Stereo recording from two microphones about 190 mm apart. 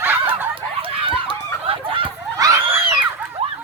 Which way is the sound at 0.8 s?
30° right (ahead or behind).